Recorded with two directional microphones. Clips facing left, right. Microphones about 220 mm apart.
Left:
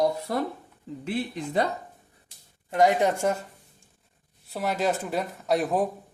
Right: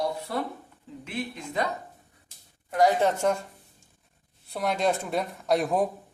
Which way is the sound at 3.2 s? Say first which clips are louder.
Right 1 dB; 5° left (ahead or behind).